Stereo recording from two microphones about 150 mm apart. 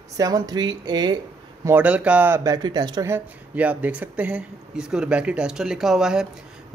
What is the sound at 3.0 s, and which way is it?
Speech, 15° right (ahead or behind).